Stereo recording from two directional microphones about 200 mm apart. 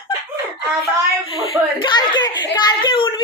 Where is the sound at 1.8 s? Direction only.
20° left (ahead or behind).